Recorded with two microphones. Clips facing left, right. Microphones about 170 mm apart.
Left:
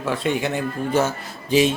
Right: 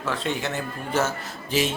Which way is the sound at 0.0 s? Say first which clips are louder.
Left 5 dB; 10° left (ahead or behind).